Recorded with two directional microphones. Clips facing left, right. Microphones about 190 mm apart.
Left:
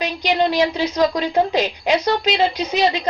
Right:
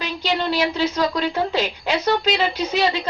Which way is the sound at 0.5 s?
15° left (ahead or behind).